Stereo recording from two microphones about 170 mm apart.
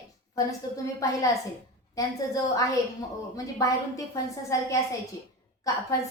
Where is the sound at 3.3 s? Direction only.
20° left (ahead or behind).